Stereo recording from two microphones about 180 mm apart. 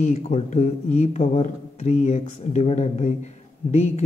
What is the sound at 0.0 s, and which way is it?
Speech, 40° left (ahead or behind).